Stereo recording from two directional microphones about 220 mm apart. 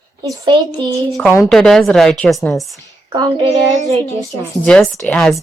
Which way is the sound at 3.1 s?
15° right (ahead or behind).